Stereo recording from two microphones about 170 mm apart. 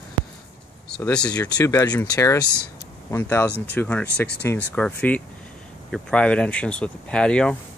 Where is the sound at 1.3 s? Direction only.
20° left (ahead or behind); by 7.5 s 5° left (ahead or behind).